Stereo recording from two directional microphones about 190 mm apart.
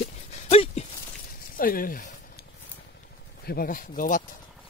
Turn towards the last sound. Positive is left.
turn(degrees=45)  # may be behind; listen again after turning